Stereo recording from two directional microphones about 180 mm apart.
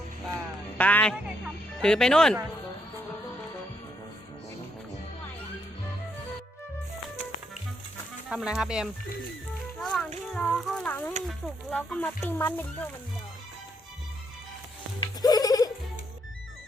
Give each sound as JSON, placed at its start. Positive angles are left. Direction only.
{"t": 0.8, "sound": "speech", "side_deg": 10}
{"t": 8.3, "sound": "speech", "side_deg": -5}
{"t": 9.8, "sound": "music", "side_deg": 5}
{"t": 10.3, "sound": "speech", "side_deg": 5}
{"t": 15.0, "sound": "music", "side_deg": 20}